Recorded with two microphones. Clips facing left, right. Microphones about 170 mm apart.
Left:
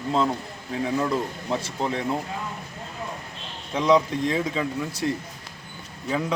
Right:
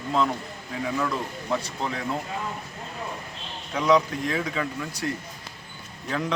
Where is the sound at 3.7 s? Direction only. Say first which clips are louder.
Left 1 dB; 20° left (ahead or behind).